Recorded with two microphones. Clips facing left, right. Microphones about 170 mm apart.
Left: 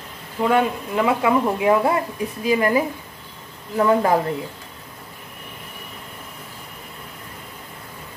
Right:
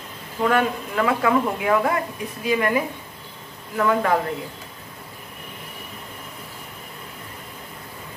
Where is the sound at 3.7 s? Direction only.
30° left (ahead or behind).